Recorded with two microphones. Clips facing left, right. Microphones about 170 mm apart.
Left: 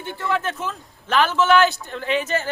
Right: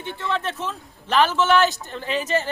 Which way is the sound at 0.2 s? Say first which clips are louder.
Left 2 dB; 5° left (ahead or behind).